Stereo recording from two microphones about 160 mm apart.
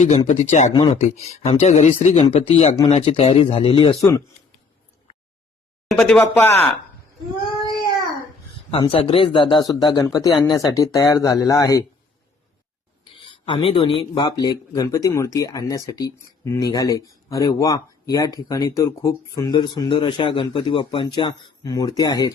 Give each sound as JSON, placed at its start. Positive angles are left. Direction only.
{"t": 0.3, "sound": "speech", "side_deg": 50}
{"t": 0.7, "sound": "speech", "side_deg": 25}
{"t": 0.9, "sound": "speech", "side_deg": 45}
{"t": 5.9, "sound": "speech", "side_deg": 5}
{"t": 8.7, "sound": "speech", "side_deg": 35}
{"t": 13.4, "sound": "speech", "side_deg": 35}